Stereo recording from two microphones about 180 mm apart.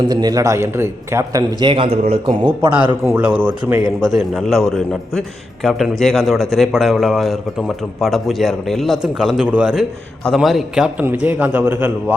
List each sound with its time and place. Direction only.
0.0 s a man's voice: 25° right (ahead or behind)
3.1 s a man's voice: 10° right (ahead or behind)
4.1 s a man's voice: centre (ahead or behind)